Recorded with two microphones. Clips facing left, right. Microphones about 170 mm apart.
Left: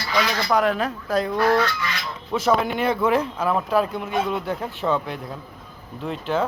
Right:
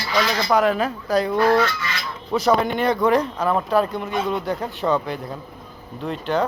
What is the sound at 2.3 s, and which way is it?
Speech, centre (ahead or behind).